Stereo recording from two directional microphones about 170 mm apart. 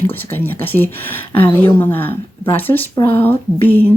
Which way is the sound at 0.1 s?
10° left (ahead or behind).